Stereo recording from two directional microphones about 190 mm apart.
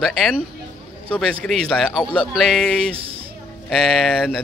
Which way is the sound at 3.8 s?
Centre (ahead or behind).